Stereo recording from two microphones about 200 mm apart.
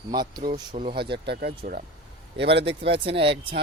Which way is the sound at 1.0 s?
55° right (ahead or behind).